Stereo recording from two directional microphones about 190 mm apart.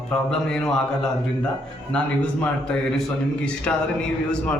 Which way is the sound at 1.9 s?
5° left (ahead or behind).